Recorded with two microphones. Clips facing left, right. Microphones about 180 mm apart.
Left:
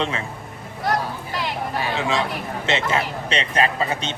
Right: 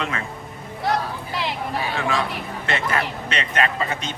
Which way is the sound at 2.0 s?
20° left (ahead or behind).